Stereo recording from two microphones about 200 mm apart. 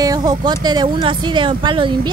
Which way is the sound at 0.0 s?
20° right (ahead or behind).